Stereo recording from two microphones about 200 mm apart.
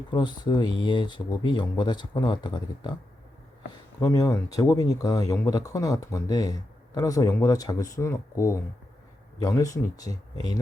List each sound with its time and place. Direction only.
0.1 s speech: 20° left (ahead or behind)
4.0 s speech: 15° left (ahead or behind)